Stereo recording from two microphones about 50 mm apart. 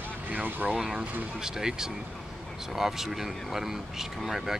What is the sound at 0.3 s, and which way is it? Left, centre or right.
Vehicle, right.